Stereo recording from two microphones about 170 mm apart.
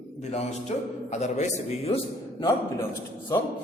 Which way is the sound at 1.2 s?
45° left (ahead or behind).